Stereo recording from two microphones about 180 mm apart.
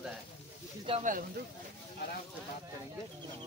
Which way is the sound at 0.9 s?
30° right (ahead or behind).